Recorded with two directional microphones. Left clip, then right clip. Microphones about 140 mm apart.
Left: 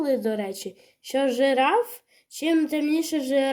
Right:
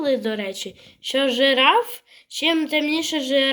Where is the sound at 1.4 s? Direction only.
45° left (ahead or behind).